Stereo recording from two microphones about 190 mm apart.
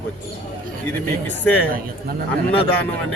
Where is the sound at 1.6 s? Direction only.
50° right (ahead or behind).